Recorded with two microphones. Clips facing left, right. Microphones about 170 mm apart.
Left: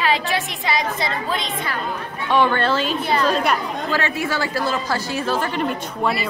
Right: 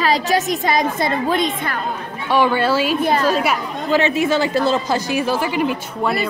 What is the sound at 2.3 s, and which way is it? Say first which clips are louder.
A woman's voice: right 2 dB; 10° right (ahead or behind).